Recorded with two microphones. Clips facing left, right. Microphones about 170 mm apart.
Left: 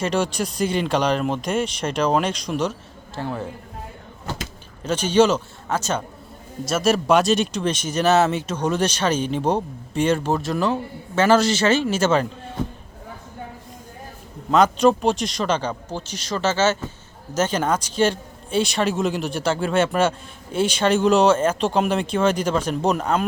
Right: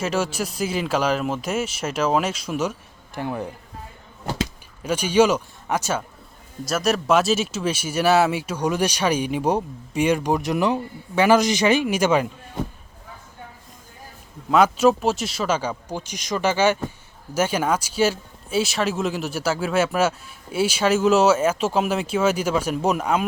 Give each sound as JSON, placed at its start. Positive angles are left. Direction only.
{"t": 0.0, "sound": "speech", "side_deg": -5}
{"t": 4.8, "sound": "speech", "side_deg": -10}
{"t": 6.7, "sound": "speech", "side_deg": 0}
{"t": 14.5, "sound": "speech", "side_deg": -5}